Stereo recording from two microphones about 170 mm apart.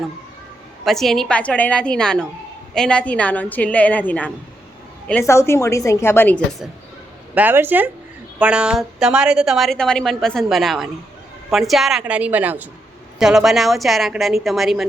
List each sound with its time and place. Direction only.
0.9 s a woman's voice: centre (ahead or behind)
7.3 s a woman's voice: 10° right (ahead or behind)